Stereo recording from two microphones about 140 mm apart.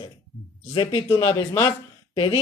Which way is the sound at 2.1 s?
35° left (ahead or behind).